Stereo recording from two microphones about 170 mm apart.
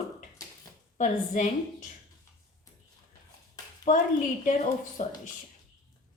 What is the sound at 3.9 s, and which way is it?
A woman's voice, 50° left (ahead or behind).